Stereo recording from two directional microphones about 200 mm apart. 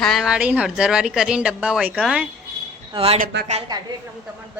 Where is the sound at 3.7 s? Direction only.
20° right (ahead or behind).